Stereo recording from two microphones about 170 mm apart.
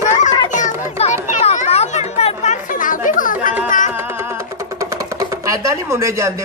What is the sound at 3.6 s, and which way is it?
Music, 50° left (ahead or behind).